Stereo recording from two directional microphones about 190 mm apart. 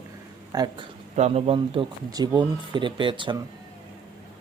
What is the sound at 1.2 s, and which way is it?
Speech, 35° right (ahead or behind).